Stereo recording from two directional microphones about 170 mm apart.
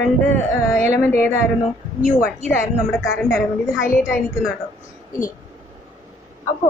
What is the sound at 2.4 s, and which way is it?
Speech, centre (ahead or behind).